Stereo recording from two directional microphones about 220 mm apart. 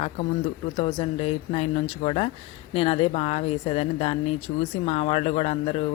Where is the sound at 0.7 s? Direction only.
25° left (ahead or behind).